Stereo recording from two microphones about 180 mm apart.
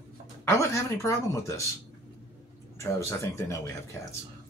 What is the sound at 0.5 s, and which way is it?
Speech, 15° left (ahead or behind).